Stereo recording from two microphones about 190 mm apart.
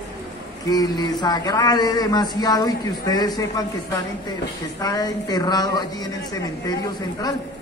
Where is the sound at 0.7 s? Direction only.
20° left (ahead or behind).